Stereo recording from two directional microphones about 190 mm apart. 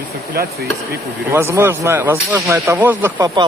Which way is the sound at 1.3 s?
10° right (ahead or behind).